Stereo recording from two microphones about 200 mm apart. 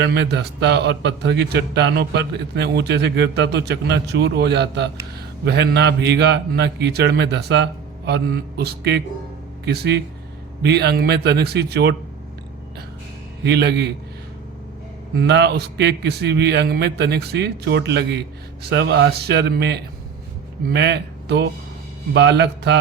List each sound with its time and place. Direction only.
0.0 s a man's voice: 55° right (ahead or behind)
13.4 s a man's voice: 55° right (ahead or behind)
15.2 s a man's voice: 55° right (ahead or behind)